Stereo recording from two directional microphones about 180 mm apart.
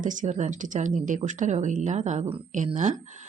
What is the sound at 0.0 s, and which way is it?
A woman's voice, 45° right (ahead or behind).